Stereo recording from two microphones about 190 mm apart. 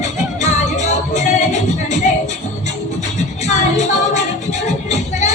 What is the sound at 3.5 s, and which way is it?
Music, 35° left (ahead or behind).